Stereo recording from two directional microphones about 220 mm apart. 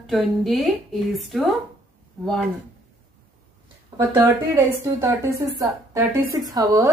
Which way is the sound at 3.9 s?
10° right (ahead or behind).